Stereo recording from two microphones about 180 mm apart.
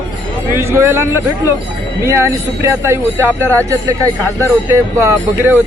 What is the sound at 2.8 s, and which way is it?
A man's voice, 15° right (ahead or behind).